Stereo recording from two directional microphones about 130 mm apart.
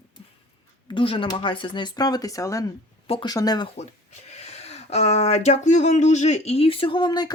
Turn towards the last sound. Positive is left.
turn(degrees=35)  # may be behind; listen again after turning